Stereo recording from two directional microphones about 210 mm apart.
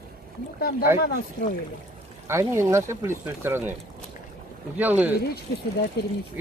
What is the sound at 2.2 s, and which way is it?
Speech, 15° right (ahead or behind).